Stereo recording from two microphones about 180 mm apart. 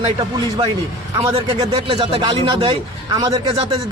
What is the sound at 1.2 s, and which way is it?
Speech, 30° right (ahead or behind).